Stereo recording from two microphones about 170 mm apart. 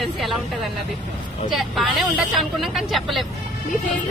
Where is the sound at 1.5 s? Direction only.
Centre (ahead or behind).